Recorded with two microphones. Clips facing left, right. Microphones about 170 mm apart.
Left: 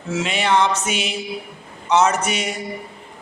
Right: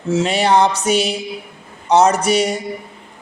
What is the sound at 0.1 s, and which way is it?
A woman's voice, 35° right (ahead or behind).